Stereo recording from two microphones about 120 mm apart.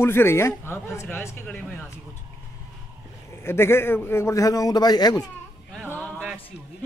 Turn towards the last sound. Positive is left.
turn(degrees=15)  # may be behind; listen again after turning